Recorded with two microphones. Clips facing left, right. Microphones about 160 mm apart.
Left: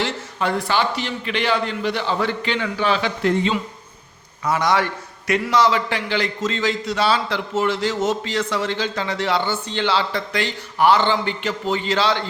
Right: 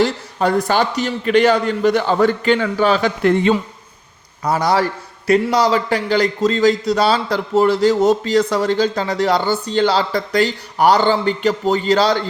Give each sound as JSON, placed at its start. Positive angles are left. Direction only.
{"t": 0.0, "sound": "a man's voice", "side_deg": -40}
{"t": 4.4, "sound": "a man's voice", "side_deg": -35}